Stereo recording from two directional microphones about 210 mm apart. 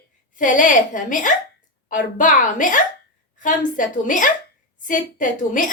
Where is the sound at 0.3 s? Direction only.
40° left (ahead or behind).